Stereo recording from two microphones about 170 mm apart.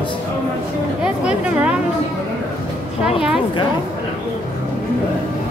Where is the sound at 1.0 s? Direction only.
5° right (ahead or behind).